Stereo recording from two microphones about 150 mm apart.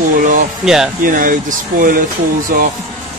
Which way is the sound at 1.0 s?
65° right (ahead or behind).